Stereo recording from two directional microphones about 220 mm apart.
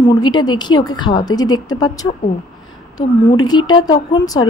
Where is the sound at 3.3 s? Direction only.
20° left (ahead or behind).